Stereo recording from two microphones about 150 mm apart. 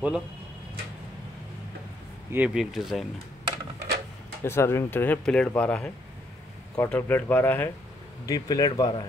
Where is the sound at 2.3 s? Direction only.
10° right (ahead or behind).